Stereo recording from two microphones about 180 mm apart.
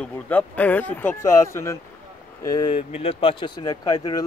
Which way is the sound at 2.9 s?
35° left (ahead or behind).